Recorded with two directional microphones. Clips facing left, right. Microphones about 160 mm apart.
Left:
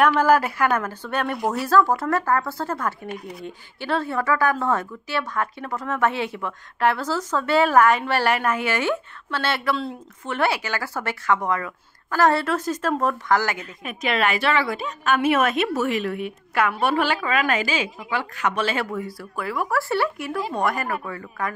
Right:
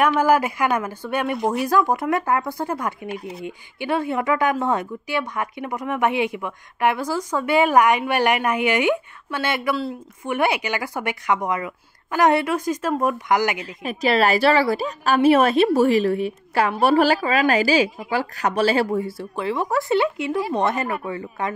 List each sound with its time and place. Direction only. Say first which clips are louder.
0.1 s speech: even; 15° right (ahead or behind)
13.8 s a woman's voice: right 5 dB; 35° right (ahead or behind)